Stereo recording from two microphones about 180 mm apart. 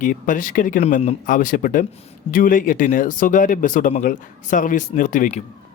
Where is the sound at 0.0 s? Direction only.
50° left (ahead or behind).